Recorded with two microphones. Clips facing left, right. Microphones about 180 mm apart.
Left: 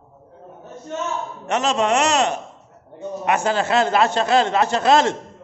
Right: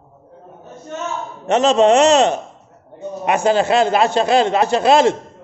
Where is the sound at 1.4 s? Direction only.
25° right (ahead or behind).